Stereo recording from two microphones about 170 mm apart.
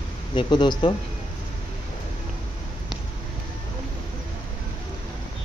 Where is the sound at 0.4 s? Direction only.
25° left (ahead or behind).